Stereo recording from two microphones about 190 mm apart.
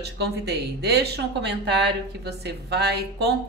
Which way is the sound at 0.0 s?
60° right (ahead or behind).